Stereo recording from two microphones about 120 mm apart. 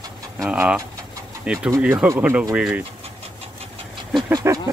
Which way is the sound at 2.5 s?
10° right (ahead or behind).